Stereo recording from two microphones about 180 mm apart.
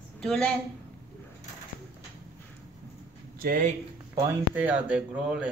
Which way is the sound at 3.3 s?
50° right (ahead or behind).